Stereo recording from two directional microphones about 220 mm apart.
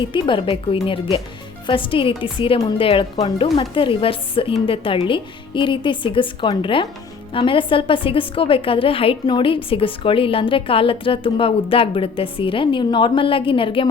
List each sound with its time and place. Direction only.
0.1 s a woman's voice: 20° left (ahead or behind)